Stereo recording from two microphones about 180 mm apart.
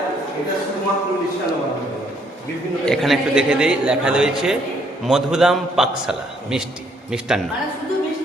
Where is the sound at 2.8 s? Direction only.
Centre (ahead or behind).